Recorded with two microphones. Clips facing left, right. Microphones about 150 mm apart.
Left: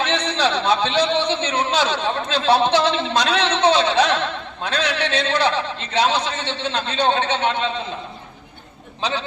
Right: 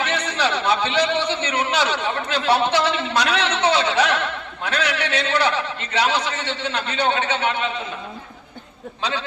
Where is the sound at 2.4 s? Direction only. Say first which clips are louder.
Left 2 dB; 20° left (ahead or behind).